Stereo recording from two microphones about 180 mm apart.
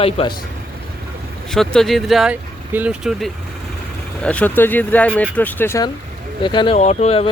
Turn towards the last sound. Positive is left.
turn(degrees=35)  # may be behind; listen again after turning